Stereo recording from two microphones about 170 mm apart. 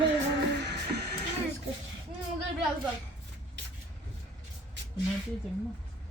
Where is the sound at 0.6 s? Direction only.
70° right (ahead or behind).